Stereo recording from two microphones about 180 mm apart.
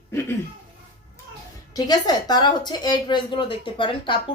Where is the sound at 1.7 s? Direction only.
20° left (ahead or behind).